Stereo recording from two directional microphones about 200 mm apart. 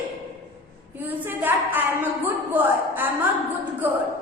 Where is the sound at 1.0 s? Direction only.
10° right (ahead or behind).